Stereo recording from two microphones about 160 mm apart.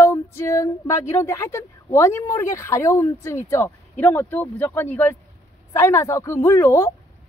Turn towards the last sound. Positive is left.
turn(degrees=20)  # may be behind; listen again after turning